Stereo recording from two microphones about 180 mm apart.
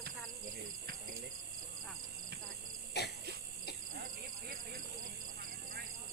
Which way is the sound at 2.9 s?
65° left (ahead or behind).